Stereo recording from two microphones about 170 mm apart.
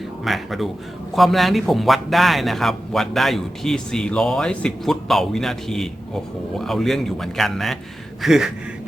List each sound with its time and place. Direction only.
0.3 s speech: centre (ahead or behind)